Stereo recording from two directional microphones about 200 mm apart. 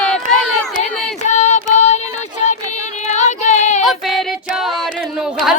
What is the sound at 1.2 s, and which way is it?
Child singing, 35° left (ahead or behind).